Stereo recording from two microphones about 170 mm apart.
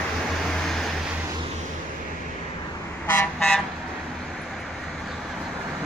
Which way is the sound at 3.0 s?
10° left (ahead or behind).